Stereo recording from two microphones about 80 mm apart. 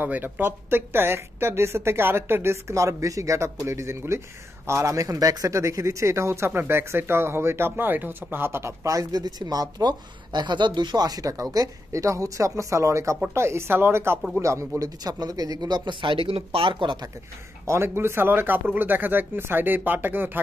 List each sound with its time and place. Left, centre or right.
0.0 s speech: right
14.8 s speech: right
17.6 s speech: right